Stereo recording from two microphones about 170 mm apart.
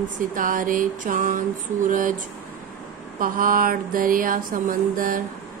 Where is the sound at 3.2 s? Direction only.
55° right (ahead or behind).